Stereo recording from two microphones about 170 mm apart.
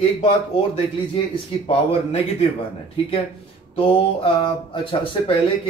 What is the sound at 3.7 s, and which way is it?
Mantra, 30° left (ahead or behind).